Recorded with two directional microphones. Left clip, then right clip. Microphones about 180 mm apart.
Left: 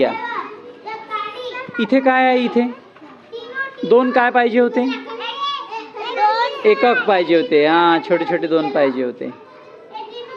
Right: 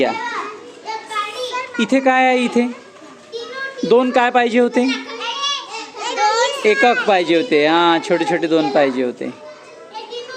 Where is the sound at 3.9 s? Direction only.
20° right (ahead or behind).